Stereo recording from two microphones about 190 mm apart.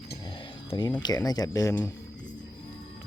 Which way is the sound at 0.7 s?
25° left (ahead or behind).